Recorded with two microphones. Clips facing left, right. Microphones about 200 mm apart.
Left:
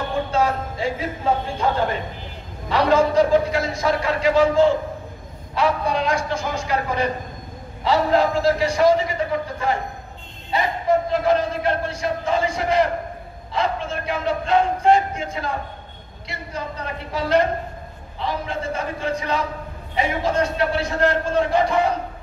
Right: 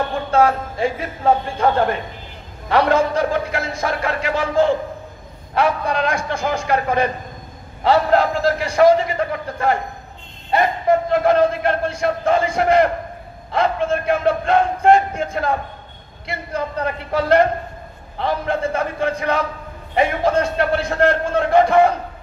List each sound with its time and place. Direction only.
0.3 s a man's voice: 55° right (ahead or behind)